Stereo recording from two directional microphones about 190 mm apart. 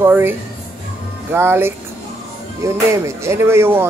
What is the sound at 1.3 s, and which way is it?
Speech, 10° right (ahead or behind).